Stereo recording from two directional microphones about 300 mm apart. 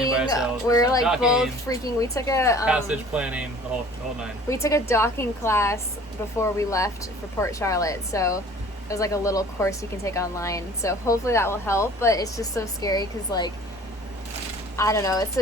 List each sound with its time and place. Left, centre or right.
0.3 s speech: centre
1.0 s speech: centre
1.6 s speech: centre
2.6 s speech: centre
4.4 s speech: centre
14.8 s speech: centre